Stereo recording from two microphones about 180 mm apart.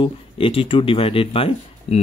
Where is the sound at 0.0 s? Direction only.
30° left (ahead or behind).